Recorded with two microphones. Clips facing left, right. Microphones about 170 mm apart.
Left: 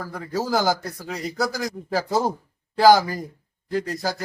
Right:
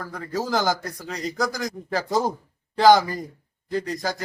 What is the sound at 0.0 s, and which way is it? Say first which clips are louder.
Speech: left 1 dB; 10° left (ahead or behind).